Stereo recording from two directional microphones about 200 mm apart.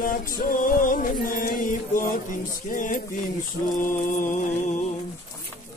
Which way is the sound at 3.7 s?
40° left (ahead or behind).